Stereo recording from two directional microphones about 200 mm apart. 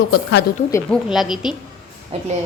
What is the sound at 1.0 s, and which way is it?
Speech, centre (ahead or behind).